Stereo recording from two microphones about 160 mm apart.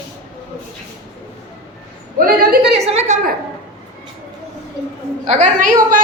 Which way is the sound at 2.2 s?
65° right (ahead or behind).